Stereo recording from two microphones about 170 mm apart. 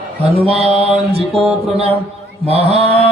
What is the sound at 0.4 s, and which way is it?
A man's voice, 35° right (ahead or behind).